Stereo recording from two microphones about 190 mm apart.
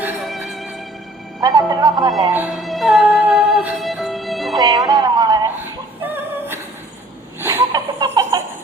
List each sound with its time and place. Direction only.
0.0 s music: 5° right (ahead or behind)
1.4 s speech: 20° right (ahead or behind)
2.3 s music: 5° right (ahead or behind)
4.5 s music: 20° right (ahead or behind)
6.0 s singing: 10° right (ahead or behind)
7.4 s a sound: 15° right (ahead or behind)